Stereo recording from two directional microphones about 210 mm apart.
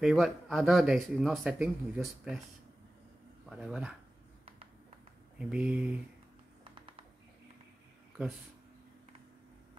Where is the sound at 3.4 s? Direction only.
5° right (ahead or behind).